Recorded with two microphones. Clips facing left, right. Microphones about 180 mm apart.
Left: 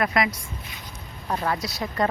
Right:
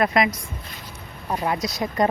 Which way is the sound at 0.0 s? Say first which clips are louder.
Right 3 dB; 25° right (ahead or behind).